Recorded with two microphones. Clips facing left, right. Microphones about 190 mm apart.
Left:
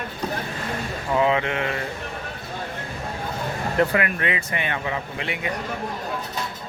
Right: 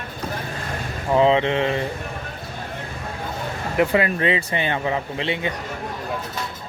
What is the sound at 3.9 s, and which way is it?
A man's voice, 30° right (ahead or behind).